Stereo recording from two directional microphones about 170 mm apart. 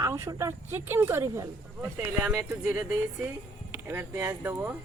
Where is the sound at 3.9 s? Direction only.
15° right (ahead or behind).